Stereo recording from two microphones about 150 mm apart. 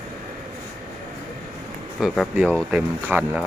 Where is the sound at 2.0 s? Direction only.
5° right (ahead or behind).